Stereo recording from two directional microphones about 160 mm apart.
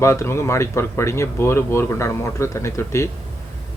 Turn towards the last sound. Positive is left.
turn(degrees=15)  # may be behind; listen again after turning